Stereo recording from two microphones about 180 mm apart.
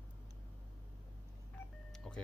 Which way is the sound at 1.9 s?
5° left (ahead or behind).